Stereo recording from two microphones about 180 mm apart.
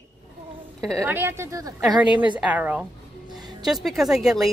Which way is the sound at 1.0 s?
10° right (ahead or behind).